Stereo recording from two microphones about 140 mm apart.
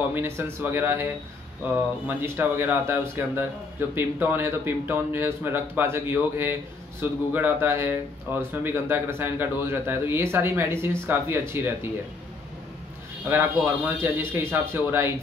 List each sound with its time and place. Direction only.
0.1 s speech: 15° right (ahead or behind)
2.0 s speech: 15° right (ahead or behind)
13.3 s speech: 15° right (ahead or behind)